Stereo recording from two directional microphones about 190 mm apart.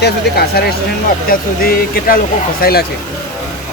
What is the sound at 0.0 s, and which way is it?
Speech, 55° left (ahead or behind).